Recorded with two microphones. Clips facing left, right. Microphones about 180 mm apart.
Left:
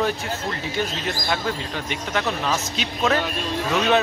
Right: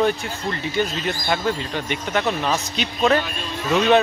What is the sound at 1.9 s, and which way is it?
Speech, centre (ahead or behind).